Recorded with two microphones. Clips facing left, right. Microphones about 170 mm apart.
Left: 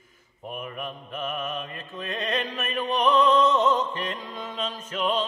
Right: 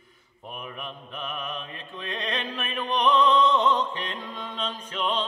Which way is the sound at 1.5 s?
45° left (ahead or behind).